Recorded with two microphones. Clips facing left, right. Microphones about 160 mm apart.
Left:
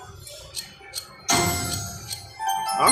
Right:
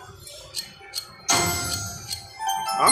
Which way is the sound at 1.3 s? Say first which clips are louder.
Left 2 dB; 20° left (ahead or behind).